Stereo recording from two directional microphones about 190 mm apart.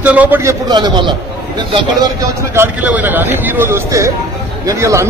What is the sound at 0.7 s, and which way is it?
Speech, 25° right (ahead or behind).